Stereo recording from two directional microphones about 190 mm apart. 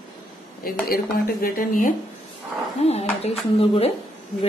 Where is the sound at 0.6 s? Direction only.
50° left (ahead or behind).